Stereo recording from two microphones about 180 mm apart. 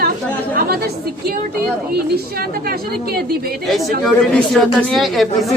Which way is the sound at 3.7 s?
Centre (ahead or behind).